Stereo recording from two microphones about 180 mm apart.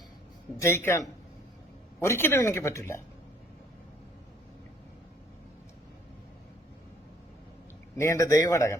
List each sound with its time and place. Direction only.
0.6 s speech: 15° left (ahead or behind)
7.9 s speech: 15° left (ahead or behind)